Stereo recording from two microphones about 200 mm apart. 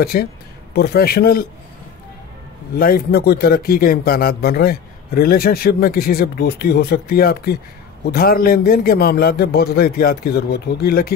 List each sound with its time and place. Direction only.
0.1 s a man's voice: 45° left (ahead or behind)
2.8 s a man's voice: 50° left (ahead or behind)